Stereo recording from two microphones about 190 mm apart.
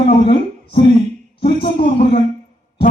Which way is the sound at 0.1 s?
30° left (ahead or behind).